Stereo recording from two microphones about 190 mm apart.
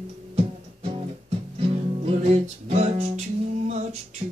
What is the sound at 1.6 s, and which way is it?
Music, 30° right (ahead or behind).